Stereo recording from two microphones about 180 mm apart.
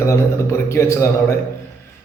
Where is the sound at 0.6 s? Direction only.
15° left (ahead or behind).